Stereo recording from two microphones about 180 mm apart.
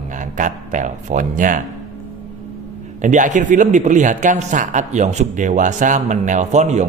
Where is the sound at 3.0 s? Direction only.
45° right (ahead or behind).